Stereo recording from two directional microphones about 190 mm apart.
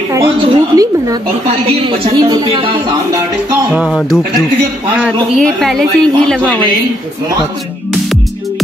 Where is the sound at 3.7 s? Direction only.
Centre (ahead or behind).